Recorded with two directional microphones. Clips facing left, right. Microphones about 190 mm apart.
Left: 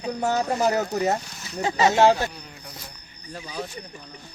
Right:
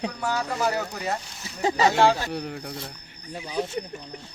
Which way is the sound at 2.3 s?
65° right (ahead or behind).